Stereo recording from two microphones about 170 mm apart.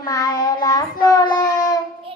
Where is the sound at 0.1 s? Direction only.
20° left (ahead or behind).